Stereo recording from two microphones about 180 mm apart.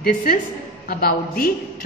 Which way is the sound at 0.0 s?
55° left (ahead or behind).